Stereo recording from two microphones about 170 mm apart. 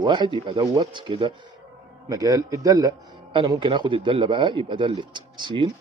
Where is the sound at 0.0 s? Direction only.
25° right (ahead or behind).